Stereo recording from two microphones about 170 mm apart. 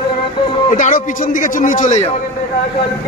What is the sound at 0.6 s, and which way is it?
A man's voice, 45° left (ahead or behind).